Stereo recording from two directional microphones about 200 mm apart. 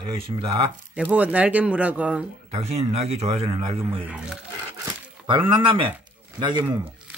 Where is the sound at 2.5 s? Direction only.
30° right (ahead or behind).